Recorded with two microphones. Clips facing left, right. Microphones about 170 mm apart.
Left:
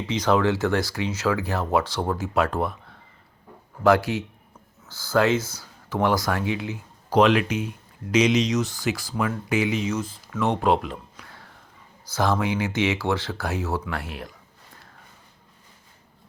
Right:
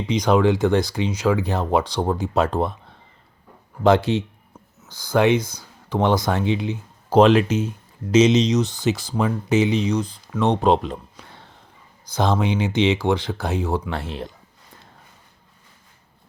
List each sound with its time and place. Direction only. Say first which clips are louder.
0.1 s speech: right 4 dB; 15° right (ahead or behind)
3.8 s speech: right 3 dB; 20° right (ahead or behind)